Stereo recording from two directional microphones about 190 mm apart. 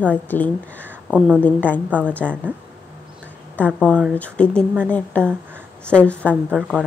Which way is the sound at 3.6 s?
10° left (ahead or behind).